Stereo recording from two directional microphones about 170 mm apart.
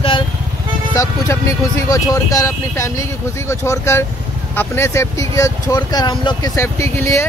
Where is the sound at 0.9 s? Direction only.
20° left (ahead or behind).